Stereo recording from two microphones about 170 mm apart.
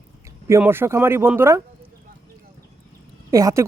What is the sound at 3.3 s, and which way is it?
Speech, 20° right (ahead or behind).